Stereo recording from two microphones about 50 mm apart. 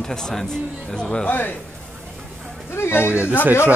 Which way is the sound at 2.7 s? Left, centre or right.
Left.